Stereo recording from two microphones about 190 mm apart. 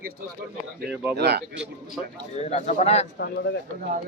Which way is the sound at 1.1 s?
60° right (ahead or behind).